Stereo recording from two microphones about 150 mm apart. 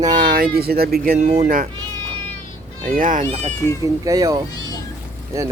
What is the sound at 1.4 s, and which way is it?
Speech, 70° right (ahead or behind).